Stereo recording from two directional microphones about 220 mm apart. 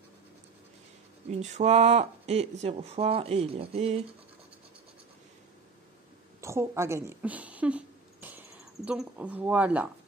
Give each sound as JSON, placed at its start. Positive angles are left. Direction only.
{"t": 1.3, "sound": "speech", "side_deg": -30}
{"t": 6.4, "sound": "speech", "side_deg": -10}